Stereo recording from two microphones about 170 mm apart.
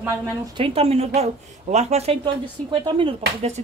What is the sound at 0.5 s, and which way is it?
Speech, 35° right (ahead or behind).